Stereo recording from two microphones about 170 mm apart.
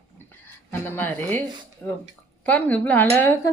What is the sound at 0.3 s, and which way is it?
Speech, 10° left (ahead or behind).